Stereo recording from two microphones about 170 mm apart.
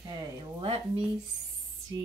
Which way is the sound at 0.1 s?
25° right (ahead or behind).